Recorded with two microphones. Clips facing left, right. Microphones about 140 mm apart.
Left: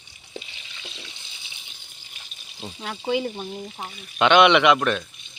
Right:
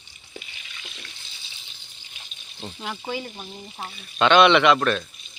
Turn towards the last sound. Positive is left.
turn(degrees=15)  # may be behind; listen again after turning